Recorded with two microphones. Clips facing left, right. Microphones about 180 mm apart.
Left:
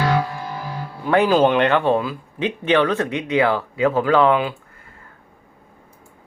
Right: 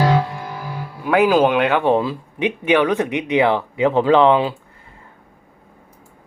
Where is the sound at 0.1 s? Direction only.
20° right (ahead or behind).